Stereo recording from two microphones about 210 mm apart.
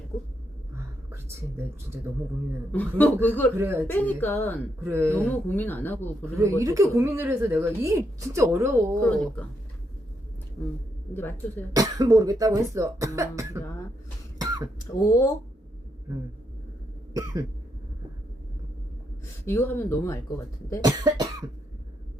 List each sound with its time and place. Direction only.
1.1 s a sound: 10° right (ahead or behind)
2.7 s speech: 10° left (ahead or behind)
3.6 s a woman's voice: 10° right (ahead or behind)
3.8 s speech: 10° left (ahead or behind)
4.8 s a woman's voice: 10° right (ahead or behind)
5.1 s speech: 10° left (ahead or behind)
6.6 s a woman's voice: 15° right (ahead or behind)
9.0 s speech: 5° left (ahead or behind)
10.6 s speech: 15° left (ahead or behind)
11.7 s a woman's voice: 15° right (ahead or behind)
14.3 s throat clearing: 20° right (ahead or behind)
15.0 s speech: 15° left (ahead or behind)
19.5 s speech: 10° left (ahead or behind)
20.8 s a woman's voice: 20° right (ahead or behind)